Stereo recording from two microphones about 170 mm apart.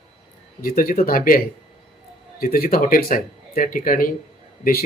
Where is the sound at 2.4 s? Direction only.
55° left (ahead or behind).